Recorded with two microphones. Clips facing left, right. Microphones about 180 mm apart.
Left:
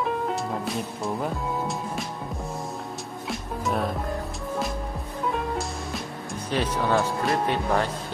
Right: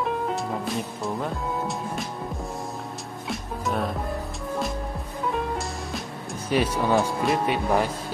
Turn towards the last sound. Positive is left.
turn(degrees=-10)  # may be behind; listen again after turning